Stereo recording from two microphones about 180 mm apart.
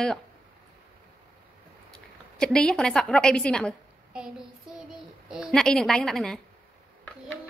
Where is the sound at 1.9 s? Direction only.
5° left (ahead or behind).